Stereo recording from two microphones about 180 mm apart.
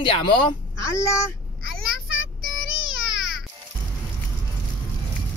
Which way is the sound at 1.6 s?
90° left.